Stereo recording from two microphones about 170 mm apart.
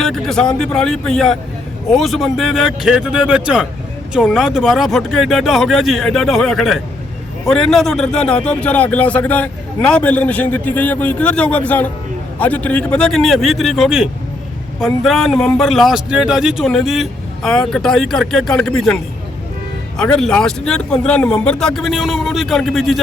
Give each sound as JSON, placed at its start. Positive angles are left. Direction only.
{"t": 0.0, "sound": "a man's voice", "side_deg": 0}
{"t": 20.0, "sound": "a man's voice", "side_deg": 5}